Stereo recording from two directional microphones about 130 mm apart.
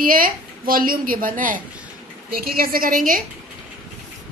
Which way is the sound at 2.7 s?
90° right.